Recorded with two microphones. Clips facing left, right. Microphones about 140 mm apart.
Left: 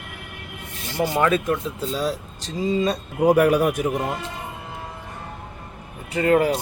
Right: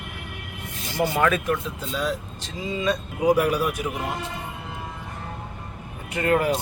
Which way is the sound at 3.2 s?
55° left (ahead or behind).